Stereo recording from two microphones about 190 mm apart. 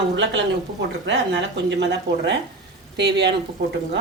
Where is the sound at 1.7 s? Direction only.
65° right (ahead or behind).